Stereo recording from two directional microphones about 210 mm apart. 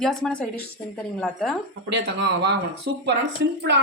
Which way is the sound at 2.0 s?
50° right (ahead or behind).